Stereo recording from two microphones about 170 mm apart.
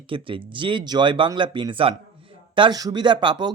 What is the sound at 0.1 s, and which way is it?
Speech, 30° right (ahead or behind).